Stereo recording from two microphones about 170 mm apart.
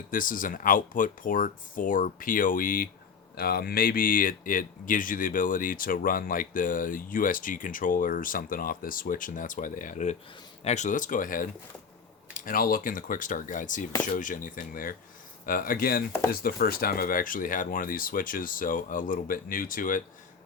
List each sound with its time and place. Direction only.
0.1 s speech: 55° left (ahead or behind)